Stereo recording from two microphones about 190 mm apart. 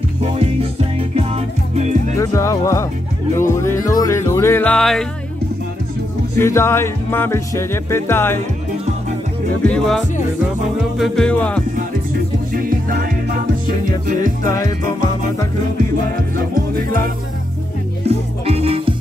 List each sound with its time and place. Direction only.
0.2 s music: 30° right (ahead or behind)
2.1 s music: 15° left (ahead or behind)
6.3 s music: 15° left (ahead or behind)
9.6 s speech: 5° left (ahead or behind)
11.0 s music: 5° left (ahead or behind)
12.5 s music: 50° right (ahead or behind)
16.3 s music: 50° right (ahead or behind)
18.0 s music: 35° right (ahead or behind)